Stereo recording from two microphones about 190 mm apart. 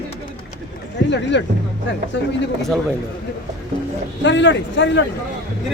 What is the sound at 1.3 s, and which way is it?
Speech, 70° left (ahead or behind).